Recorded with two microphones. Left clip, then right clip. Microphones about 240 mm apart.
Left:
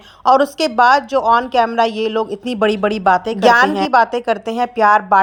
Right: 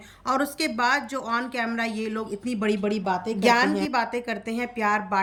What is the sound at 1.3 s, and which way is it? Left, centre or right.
Speech, left.